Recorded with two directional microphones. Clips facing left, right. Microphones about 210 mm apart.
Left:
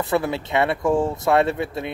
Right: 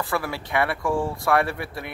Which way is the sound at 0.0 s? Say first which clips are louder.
Left 6 dB; 20° left (ahead or behind).